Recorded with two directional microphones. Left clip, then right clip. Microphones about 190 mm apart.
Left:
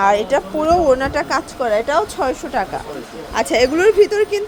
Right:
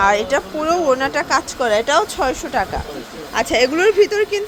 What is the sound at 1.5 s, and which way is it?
Speech, 10° right (ahead or behind).